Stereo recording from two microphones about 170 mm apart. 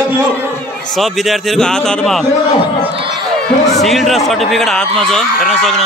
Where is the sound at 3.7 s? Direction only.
Centre (ahead or behind).